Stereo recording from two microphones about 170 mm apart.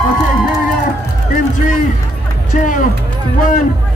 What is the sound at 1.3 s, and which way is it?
A man's voice, 50° left (ahead or behind).